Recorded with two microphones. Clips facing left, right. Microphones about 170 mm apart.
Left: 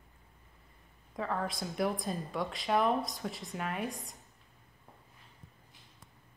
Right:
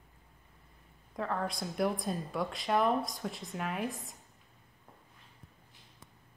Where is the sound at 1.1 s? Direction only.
Centre (ahead or behind).